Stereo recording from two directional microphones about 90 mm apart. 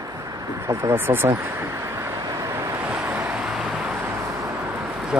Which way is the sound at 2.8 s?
15° right (ahead or behind).